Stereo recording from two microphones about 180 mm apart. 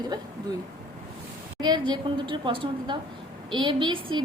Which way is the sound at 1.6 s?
25° right (ahead or behind).